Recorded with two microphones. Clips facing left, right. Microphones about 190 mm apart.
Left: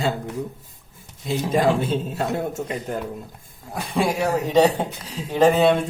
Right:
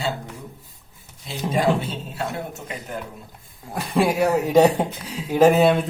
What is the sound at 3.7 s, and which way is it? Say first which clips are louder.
Speech: right 2 dB; centre (ahead or behind).